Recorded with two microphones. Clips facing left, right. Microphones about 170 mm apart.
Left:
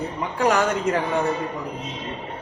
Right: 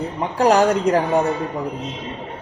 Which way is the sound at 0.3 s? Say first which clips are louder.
Right 5 dB; 35° right (ahead or behind).